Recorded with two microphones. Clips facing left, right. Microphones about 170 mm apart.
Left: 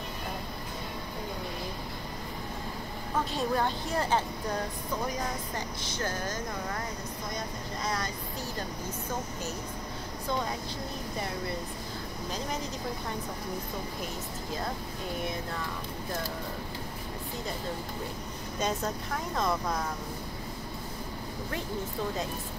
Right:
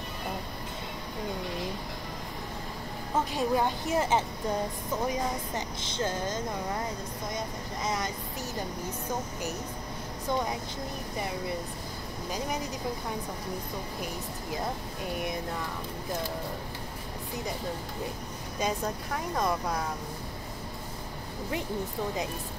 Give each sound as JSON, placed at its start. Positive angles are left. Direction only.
{"t": 3.3, "sound": "speech", "side_deg": -15}
{"t": 5.5, "sound": "speech", "side_deg": -20}
{"t": 7.8, "sound": "speech", "side_deg": -20}
{"t": 18.6, "sound": "speech", "side_deg": -10}